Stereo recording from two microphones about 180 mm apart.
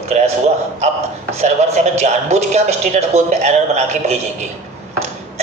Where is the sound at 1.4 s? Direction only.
40° right (ahead or behind).